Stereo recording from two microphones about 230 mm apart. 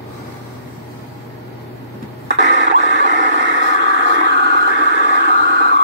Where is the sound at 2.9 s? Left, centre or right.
Right.